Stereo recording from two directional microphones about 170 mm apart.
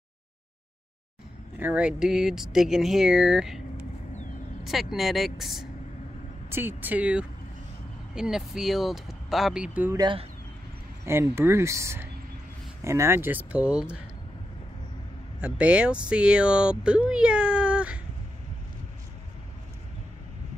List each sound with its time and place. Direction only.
1.6 s speech: 10° right (ahead or behind)
4.9 s speech: centre (ahead or behind)
6.5 s speech: 10° right (ahead or behind)
9.9 s speech: 30° right (ahead or behind)
11.1 s speech: 15° right (ahead or behind)
15.4 s speech: 5° right (ahead or behind)